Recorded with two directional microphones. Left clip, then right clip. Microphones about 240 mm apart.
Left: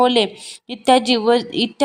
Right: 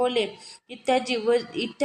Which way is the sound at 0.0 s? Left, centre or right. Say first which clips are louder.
Left 9 dB; left.